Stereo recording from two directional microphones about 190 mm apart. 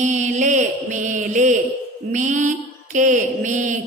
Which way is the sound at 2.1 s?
40° right (ahead or behind).